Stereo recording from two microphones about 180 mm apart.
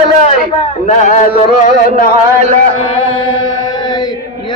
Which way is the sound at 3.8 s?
25° left (ahead or behind).